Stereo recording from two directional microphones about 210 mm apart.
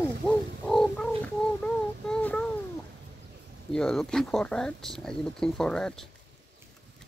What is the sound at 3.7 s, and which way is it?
Speech, centre (ahead or behind).